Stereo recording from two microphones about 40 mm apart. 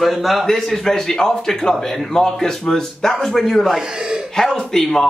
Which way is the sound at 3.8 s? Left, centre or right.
Right.